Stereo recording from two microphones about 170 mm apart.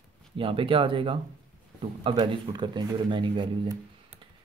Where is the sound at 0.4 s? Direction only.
30° right (ahead or behind).